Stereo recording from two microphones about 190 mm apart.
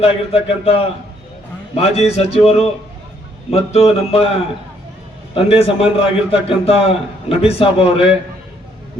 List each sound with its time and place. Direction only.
0.0 s a man's voice: 30° left (ahead or behind)